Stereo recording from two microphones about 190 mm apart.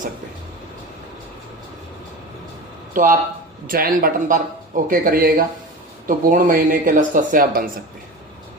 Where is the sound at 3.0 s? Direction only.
45° right (ahead or behind).